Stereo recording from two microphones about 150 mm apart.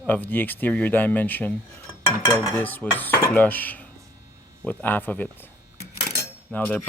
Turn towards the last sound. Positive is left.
turn(degrees=10)  # may be behind; listen again after turning